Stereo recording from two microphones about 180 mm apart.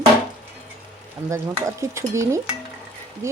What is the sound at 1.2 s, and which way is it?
Speech, 15° right (ahead or behind).